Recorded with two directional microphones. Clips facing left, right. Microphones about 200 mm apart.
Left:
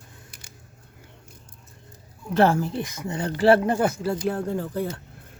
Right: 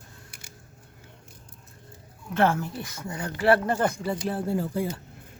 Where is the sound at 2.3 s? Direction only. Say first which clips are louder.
Left 4 dB; 35° left (ahead or behind).